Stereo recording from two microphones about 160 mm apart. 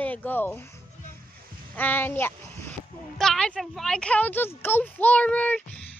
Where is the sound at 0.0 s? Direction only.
10° left (ahead or behind).